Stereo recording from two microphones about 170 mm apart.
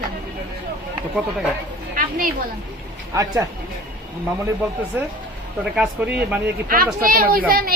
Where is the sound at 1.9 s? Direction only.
55° right (ahead or behind).